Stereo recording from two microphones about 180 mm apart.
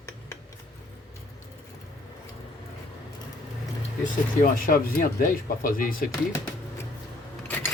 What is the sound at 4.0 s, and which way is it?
Speech, 50° left (ahead or behind).